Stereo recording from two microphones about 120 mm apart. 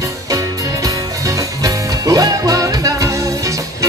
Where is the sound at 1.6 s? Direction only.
30° right (ahead or behind).